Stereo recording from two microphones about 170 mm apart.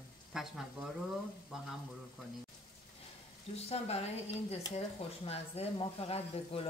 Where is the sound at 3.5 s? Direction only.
35° left (ahead or behind).